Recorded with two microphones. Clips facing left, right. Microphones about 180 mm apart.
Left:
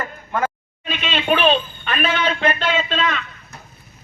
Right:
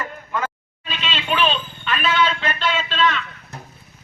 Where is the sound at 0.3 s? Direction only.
50° left (ahead or behind).